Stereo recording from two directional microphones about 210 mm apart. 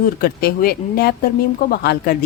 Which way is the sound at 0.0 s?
45° left (ahead or behind).